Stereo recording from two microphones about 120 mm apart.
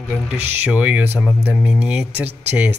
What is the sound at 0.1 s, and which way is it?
Speech, 15° right (ahead or behind).